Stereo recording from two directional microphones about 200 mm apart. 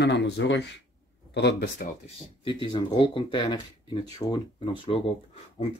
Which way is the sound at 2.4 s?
25° left (ahead or behind).